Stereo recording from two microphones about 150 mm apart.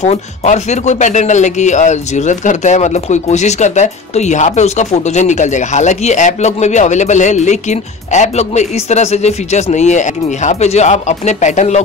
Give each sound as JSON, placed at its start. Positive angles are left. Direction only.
{"t": 0.0, "sound": "speech", "side_deg": 50}